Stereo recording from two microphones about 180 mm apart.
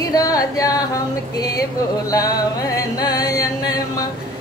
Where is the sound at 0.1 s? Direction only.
20° left (ahead or behind).